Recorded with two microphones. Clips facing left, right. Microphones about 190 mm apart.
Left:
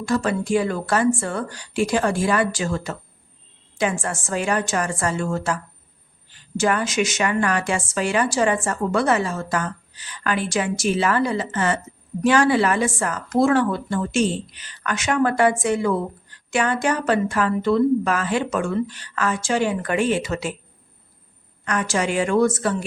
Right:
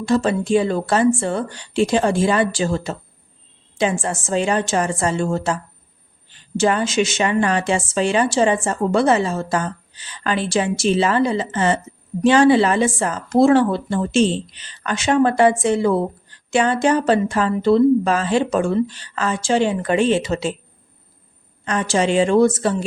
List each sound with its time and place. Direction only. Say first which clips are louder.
0.0 s a woman's voice: right 4 dB; 25° right (ahead or behind)
21.6 s a woman's voice: right 4 dB; 25° right (ahead or behind)